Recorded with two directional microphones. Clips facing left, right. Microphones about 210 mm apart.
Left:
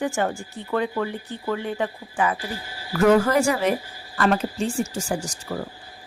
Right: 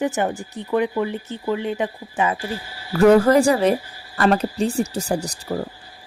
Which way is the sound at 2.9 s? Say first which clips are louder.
Right 4 dB; 35° right (ahead or behind).